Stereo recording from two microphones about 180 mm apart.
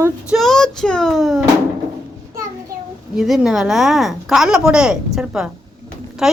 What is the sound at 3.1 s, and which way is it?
A woman's voice, centre (ahead or behind).